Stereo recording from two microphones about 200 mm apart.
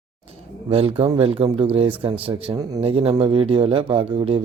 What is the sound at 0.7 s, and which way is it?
Speech, 30° right (ahead or behind).